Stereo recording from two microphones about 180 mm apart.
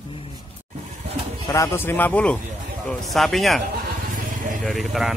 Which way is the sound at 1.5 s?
15° left (ahead or behind).